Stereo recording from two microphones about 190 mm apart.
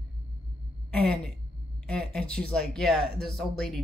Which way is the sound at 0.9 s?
5° left (ahead or behind).